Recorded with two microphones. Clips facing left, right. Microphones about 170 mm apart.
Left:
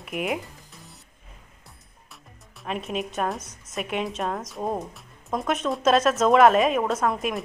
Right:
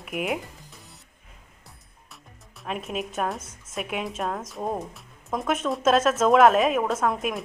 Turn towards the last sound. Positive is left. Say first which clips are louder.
# even
turn(degrees=0)  # may be behind; listen again after turning